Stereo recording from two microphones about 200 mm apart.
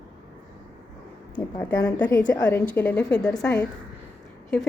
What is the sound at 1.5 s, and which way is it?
A woman's voice, 15° left (ahead or behind).